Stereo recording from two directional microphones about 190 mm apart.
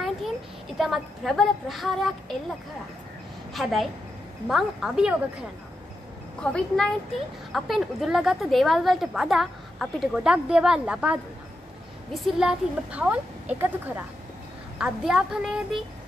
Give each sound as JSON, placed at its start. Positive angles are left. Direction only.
{"t": 0.7, "sound": "a woman's voice", "side_deg": 0}
{"t": 3.5, "sound": "a woman's voice", "side_deg": 0}
{"t": 6.4, "sound": "a woman's voice", "side_deg": 5}